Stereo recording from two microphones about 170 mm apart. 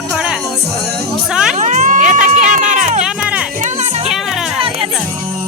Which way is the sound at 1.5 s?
45° right (ahead or behind).